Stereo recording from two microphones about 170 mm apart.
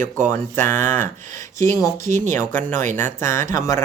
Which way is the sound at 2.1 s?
45° right (ahead or behind).